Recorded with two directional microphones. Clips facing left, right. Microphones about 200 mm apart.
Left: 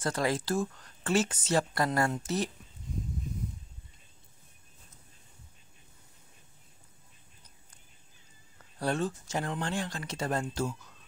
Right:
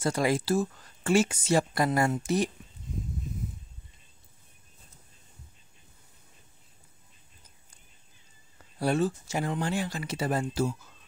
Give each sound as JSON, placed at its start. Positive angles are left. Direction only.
{"t": 0.0, "sound": "speech", "side_deg": -10}
{"t": 8.7, "sound": "speech", "side_deg": -10}